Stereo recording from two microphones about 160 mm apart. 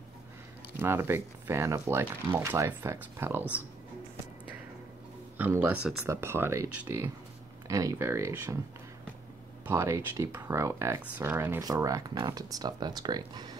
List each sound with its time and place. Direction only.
0.7 s speech: 15° right (ahead or behind)
5.4 s speech: 15° right (ahead or behind)
9.7 s speech: 20° right (ahead or behind)